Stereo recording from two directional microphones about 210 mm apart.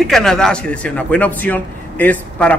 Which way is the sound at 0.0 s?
Centre (ahead or behind).